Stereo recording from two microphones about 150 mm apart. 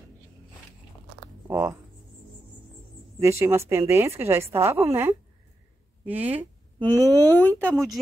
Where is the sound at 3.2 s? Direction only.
20° right (ahead or behind).